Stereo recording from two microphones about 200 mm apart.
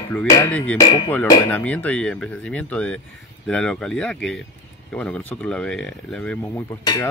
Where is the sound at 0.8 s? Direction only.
20° left (ahead or behind).